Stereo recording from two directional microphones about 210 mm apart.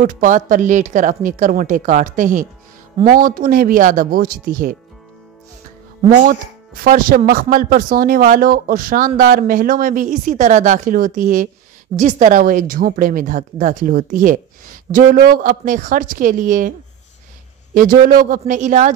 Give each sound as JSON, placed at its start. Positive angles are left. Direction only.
{"t": 0.0, "sound": "speech", "side_deg": -40}
{"t": 6.0, "sound": "speech", "side_deg": -45}
{"t": 17.7, "sound": "speech", "side_deg": -40}